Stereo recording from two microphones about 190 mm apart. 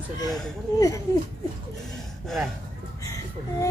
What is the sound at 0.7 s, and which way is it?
Speech, 15° left (ahead or behind).